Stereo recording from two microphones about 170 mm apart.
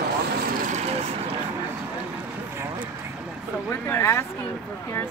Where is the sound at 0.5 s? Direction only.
45° right (ahead or behind).